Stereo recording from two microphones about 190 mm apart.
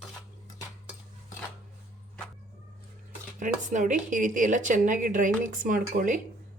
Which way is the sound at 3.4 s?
40° right (ahead or behind).